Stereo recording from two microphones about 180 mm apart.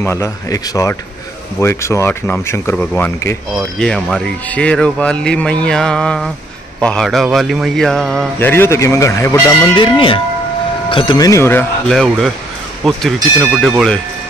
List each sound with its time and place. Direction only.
0.0 s speech: 15° left (ahead or behind)
11.9 s speech: centre (ahead or behind)